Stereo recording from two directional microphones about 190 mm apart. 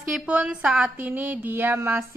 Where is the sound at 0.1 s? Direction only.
5° right (ahead or behind).